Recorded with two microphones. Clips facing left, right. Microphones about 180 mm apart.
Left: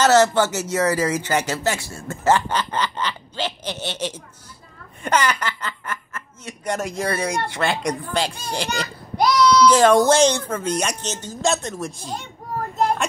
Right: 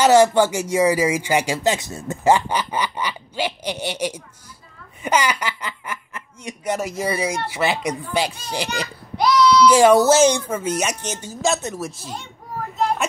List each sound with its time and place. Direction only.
0.0 s speech: 10° right (ahead or behind)
9.1 s a sound: 45° left (ahead or behind)
9.7 s speech: 10° right (ahead or behind)